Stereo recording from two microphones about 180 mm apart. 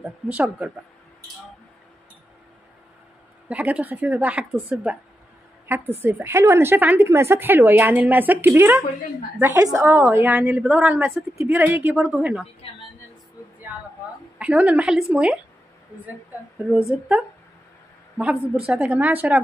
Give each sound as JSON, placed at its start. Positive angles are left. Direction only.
{"t": 0.3, "sound": "speech", "side_deg": -5}
{"t": 3.4, "sound": "speech", "side_deg": -5}
{"t": 14.4, "sound": "speech", "side_deg": -5}
{"t": 16.7, "sound": "speech", "side_deg": -5}